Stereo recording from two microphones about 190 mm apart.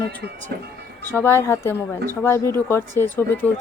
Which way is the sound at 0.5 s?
55° right (ahead or behind).